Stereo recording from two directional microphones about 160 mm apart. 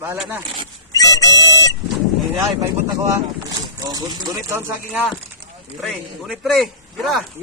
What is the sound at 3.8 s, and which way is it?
Speech, 25° right (ahead or behind).